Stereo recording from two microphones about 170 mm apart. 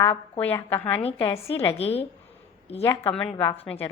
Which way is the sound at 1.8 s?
35° left (ahead or behind).